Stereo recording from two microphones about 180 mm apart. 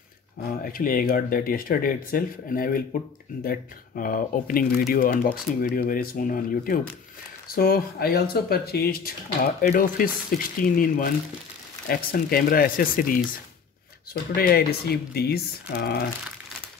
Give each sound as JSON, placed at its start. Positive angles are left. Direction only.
{"t": 0.7, "sound": "speech", "side_deg": 50}
{"t": 14.3, "sound": "speech", "side_deg": 60}